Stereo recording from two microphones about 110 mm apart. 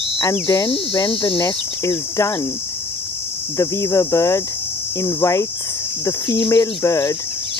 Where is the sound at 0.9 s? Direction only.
45° left (ahead or behind).